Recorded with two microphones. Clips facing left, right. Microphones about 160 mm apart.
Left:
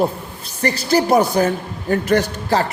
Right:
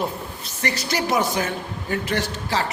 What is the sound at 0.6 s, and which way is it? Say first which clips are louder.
A man's voice: left 8 dB; 35° left (ahead or behind).